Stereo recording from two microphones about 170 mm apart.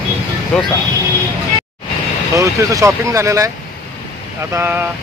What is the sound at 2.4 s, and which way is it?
Speech, 20° right (ahead or behind).